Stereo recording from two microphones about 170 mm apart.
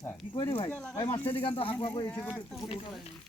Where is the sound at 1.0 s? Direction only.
30° left (ahead or behind).